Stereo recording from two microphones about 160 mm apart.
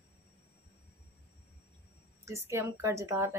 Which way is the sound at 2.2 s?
15° right (ahead or behind).